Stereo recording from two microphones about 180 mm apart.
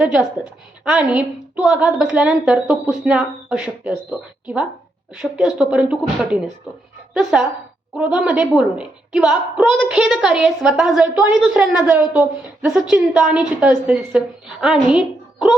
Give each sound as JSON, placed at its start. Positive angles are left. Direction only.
{"t": 0.0, "sound": "a woman's voice", "side_deg": -5}